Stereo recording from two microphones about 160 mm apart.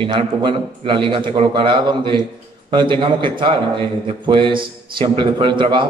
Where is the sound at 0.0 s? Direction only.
30° right (ahead or behind).